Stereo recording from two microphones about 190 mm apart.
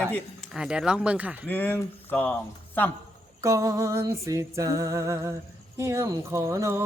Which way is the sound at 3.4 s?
15° right (ahead or behind).